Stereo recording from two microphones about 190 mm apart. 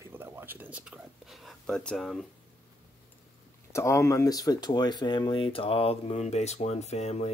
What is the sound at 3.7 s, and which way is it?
Speech, 15° left (ahead or behind).